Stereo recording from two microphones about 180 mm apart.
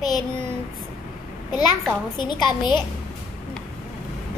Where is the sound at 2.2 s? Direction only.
25° left (ahead or behind).